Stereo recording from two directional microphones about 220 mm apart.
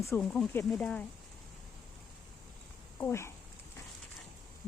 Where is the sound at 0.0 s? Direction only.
10° left (ahead or behind).